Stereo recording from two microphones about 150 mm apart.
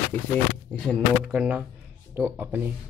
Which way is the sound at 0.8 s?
Centre (ahead or behind).